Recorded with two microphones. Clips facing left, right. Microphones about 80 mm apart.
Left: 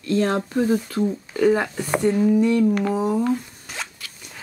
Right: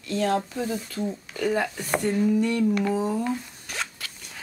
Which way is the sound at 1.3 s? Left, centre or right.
Left.